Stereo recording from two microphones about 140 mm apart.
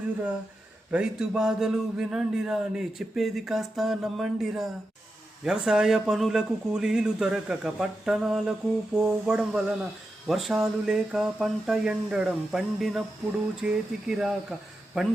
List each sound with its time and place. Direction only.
0.9 s a man's voice: 5° right (ahead or behind)